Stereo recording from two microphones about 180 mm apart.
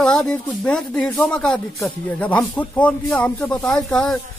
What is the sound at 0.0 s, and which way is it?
A man's voice, 5° left (ahead or behind).